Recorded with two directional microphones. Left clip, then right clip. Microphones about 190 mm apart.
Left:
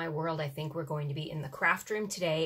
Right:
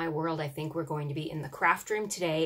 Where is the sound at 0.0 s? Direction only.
10° right (ahead or behind).